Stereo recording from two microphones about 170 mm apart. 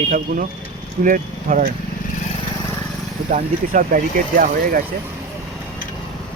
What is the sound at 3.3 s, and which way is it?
Speech, 50° right (ahead or behind).